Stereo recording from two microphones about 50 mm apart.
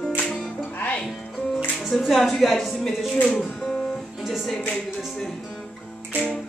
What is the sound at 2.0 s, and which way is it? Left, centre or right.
A woman's voice, centre.